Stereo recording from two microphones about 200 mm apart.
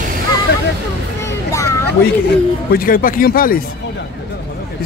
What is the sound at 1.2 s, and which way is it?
Vehicle, 15° left (ahead or behind).